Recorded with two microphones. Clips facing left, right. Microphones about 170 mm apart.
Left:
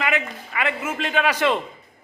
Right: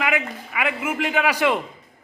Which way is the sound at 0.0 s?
10° right (ahead or behind).